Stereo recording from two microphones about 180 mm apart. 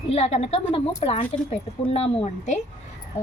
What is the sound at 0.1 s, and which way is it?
Speech, 35° left (ahead or behind).